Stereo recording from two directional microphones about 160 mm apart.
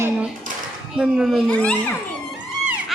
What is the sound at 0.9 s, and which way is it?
A child's voice, 5° right (ahead or behind).